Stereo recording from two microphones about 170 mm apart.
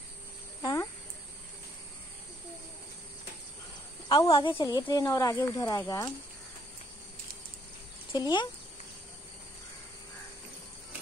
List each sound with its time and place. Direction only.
0.6 s cricket: 20° left (ahead or behind)
4.3 s speech: 25° left (ahead or behind)
8.1 s speech: 25° left (ahead or behind)